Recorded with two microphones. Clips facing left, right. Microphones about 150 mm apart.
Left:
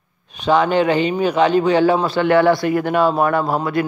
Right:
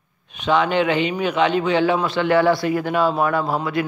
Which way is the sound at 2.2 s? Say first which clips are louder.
Left 3 dB; 55° left (ahead or behind).